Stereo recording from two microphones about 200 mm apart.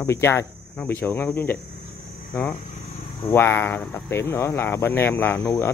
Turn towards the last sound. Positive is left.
turn(degrees=10)  # may be behind; listen again after turning